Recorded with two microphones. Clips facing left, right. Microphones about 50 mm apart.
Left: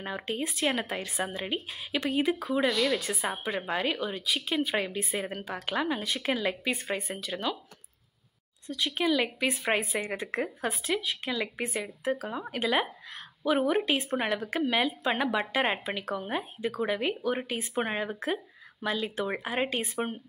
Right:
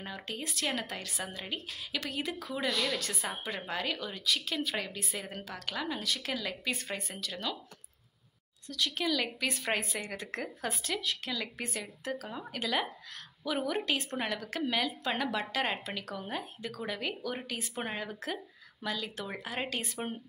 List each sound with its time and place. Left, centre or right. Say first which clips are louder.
0.0 s speech: left 7 dB; left
8.6 s speech: left 4 dB; left